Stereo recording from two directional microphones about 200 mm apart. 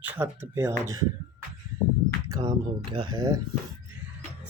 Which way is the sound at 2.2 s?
20° right (ahead or behind).